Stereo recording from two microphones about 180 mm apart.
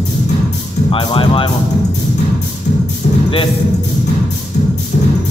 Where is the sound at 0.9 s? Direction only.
30° left (ahead or behind).